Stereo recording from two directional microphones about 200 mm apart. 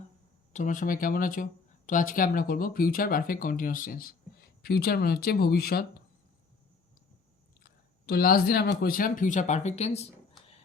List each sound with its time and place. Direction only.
0.5 s speech: 40° left (ahead or behind)
7.6 s speech: 50° left (ahead or behind); by 10.1 s 35° left (ahead or behind)